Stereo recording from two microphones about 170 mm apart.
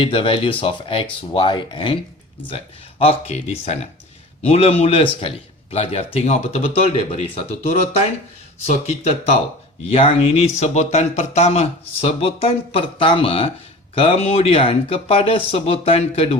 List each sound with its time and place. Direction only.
0.0 s speech: 30° left (ahead or behind)